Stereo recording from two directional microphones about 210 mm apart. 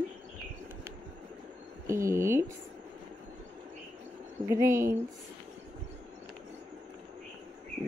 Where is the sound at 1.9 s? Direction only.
15° right (ahead or behind).